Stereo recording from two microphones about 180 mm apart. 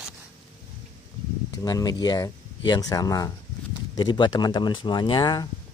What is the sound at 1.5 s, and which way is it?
Speech, 20° left (ahead or behind).